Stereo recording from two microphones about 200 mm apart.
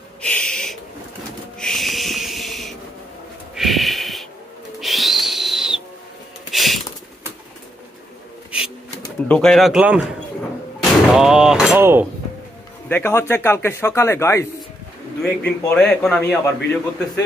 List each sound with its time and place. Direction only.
0.2 s a sound: 5° left (ahead or behind)
4.7 s music: centre (ahead or behind)
6.5 s a sound: centre (ahead or behind)
8.5 s bird: 5° right (ahead or behind)
9.3 s a man's voice: 5° left (ahead or behind)
12.8 s speech: 10° left (ahead or behind)
15.7 s a man's voice: 5° left (ahead or behind)